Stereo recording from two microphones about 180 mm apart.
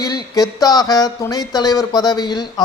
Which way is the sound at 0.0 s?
20° left (ahead or behind).